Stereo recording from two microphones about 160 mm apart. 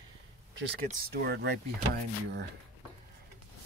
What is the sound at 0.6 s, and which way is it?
Speech, 90° right.